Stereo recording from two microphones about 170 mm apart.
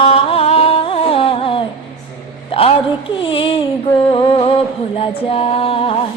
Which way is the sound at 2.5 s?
35° left (ahead or behind).